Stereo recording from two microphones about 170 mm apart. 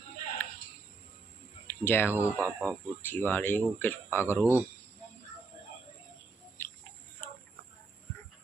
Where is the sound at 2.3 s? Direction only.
10° right (ahead or behind).